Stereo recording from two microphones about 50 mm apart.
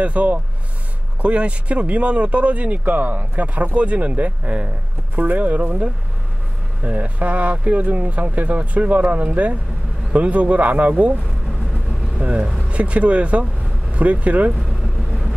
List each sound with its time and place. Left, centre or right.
0.0 s speech: right
12.2 s speech: right